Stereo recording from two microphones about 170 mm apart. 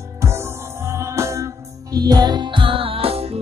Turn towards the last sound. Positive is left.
turn(degrees=-35)  # may be behind; listen again after turning